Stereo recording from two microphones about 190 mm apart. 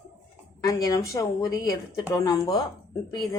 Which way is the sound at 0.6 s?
20° left (ahead or behind).